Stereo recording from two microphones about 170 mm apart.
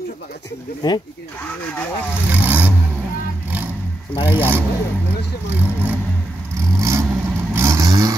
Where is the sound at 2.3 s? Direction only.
10° right (ahead or behind).